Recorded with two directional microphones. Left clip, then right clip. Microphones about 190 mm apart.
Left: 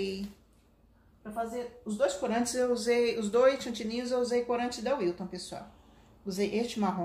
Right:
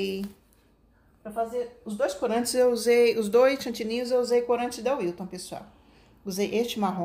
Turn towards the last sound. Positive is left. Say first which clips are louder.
# right 4 dB
turn(degrees=-40)  # may be behind; listen again after turning